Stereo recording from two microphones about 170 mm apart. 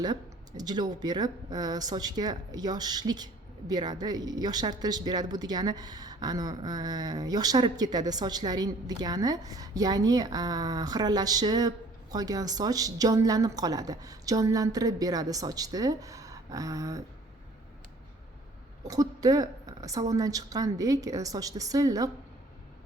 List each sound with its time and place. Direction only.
0.0 s a woman's voice: 25° right (ahead or behind)
18.9 s a woman's voice: 20° right (ahead or behind)